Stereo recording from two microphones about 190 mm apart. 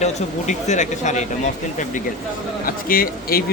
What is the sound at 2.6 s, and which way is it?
Speech, 50° left (ahead or behind).